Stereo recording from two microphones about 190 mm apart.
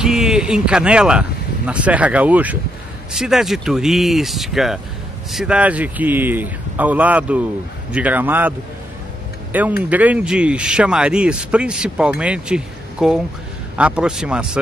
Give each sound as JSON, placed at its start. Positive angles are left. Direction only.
{"t": 0.0, "sound": "speech", "side_deg": -5}